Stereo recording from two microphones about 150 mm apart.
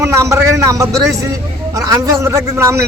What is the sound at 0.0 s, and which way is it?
A man's voice, 20° right (ahead or behind).